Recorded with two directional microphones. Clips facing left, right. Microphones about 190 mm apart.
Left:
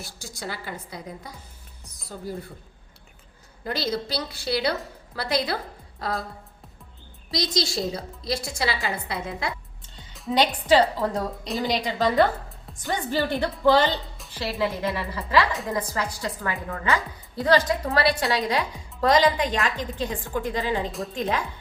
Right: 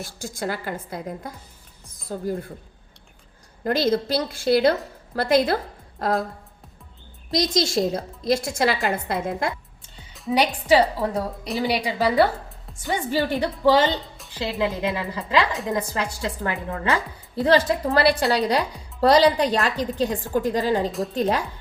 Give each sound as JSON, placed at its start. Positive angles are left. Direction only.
{"t": 0.2, "sound": "a woman's voice", "side_deg": -50}
{"t": 3.6, "sound": "a woman's voice", "side_deg": -50}
{"t": 7.3, "sound": "a woman's voice", "side_deg": -50}
{"t": 10.3, "sound": "a woman's voice", "side_deg": -10}